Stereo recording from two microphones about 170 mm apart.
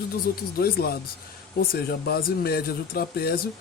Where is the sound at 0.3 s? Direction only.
65° left (ahead or behind).